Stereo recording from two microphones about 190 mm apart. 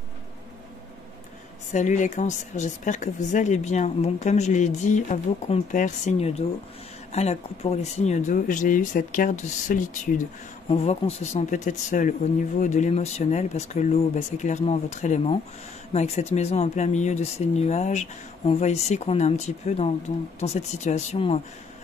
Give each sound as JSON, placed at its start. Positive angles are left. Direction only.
{"t": 1.7, "sound": "speech", "side_deg": 40}